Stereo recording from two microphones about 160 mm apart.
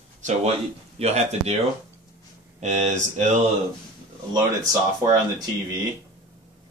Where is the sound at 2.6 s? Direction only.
45° right (ahead or behind).